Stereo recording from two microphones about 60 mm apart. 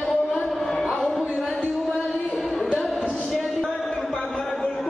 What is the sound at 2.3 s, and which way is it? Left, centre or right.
Music, centre.